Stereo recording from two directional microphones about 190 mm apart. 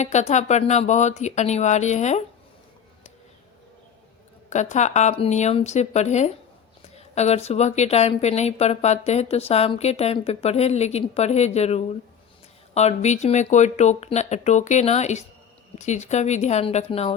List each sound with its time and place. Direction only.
0.0 s a woman's voice: 35° left (ahead or behind)
4.4 s a woman's voice: 40° left (ahead or behind)